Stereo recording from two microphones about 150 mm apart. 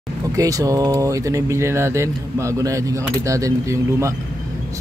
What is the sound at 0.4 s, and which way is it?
Speech, 20° right (ahead or behind).